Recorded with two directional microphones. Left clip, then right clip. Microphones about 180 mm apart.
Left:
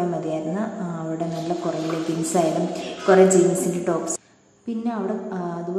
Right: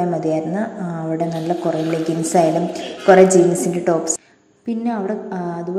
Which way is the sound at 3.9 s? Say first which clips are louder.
Right 7 dB; 20° right (ahead or behind).